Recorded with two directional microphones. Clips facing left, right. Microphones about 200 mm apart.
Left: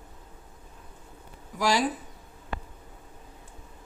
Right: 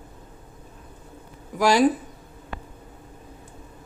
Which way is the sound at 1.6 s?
55° right (ahead or behind).